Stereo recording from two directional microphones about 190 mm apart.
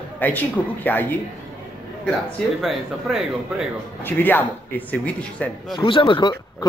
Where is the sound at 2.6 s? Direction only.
Centre (ahead or behind).